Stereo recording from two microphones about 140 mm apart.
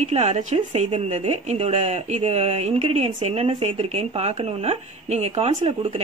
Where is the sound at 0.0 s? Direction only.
55° right (ahead or behind).